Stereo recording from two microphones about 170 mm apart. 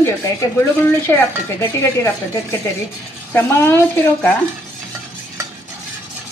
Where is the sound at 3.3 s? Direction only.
10° left (ahead or behind).